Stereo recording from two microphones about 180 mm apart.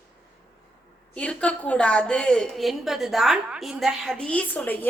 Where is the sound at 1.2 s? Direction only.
5° left (ahead or behind).